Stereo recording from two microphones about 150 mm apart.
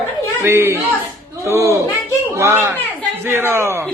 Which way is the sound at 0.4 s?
15° right (ahead or behind).